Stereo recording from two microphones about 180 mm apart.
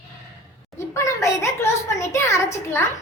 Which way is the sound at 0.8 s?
15° left (ahead or behind).